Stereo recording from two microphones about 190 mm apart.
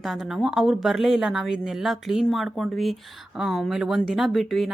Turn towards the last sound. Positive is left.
turn(degrees=0)  # may be behind; listen again after turning